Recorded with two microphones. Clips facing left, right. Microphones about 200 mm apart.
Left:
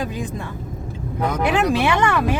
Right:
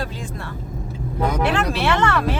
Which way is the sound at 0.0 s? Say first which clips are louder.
Left 3 dB; 15° left (ahead or behind).